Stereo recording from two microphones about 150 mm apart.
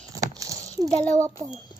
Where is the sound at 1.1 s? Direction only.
20° right (ahead or behind).